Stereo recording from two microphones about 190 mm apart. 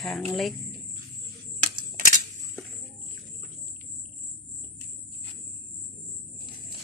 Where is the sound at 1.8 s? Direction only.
50° right (ahead or behind).